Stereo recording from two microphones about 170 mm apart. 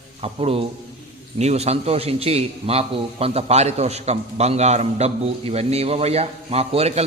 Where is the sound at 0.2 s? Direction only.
35° right (ahead or behind).